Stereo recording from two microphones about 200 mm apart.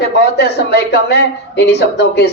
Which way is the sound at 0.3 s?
55° left (ahead or behind).